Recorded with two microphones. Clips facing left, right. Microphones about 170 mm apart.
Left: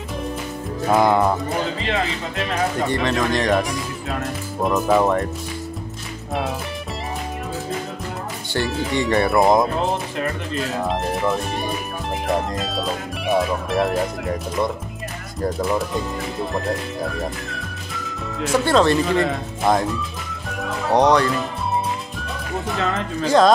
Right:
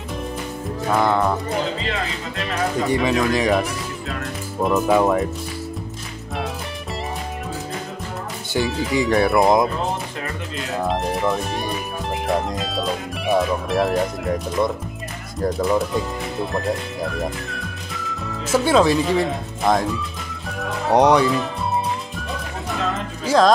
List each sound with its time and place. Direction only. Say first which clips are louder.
0.9 s music: left 2 dB; 15° left (ahead or behind)
2.4 s speech: even; 5° right (ahead or behind)
8.5 s speech: right 1 dB; centre (ahead or behind)
10.9 s speech: right 2 dB; centre (ahead or behind)
20.9 s speech: right 1 dB; 10° right (ahead or behind)
23.2 s speech: left 1 dB; centre (ahead or behind)